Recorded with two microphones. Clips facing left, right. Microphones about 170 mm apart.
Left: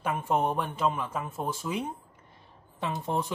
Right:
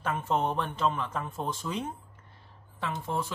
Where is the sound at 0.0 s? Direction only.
10° left (ahead or behind).